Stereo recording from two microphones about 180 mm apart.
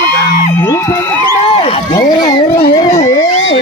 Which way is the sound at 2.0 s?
50° left (ahead or behind).